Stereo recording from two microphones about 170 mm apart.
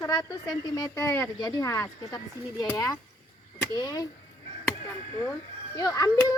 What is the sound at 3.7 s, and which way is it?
Speech, 25° left (ahead or behind).